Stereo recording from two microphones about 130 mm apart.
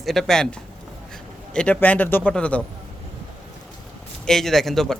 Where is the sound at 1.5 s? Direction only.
10° left (ahead or behind).